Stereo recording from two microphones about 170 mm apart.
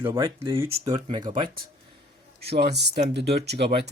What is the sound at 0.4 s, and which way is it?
Speech, 30° right (ahead or behind).